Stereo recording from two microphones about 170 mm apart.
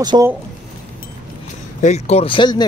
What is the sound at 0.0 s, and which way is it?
Speech, 25° right (ahead or behind).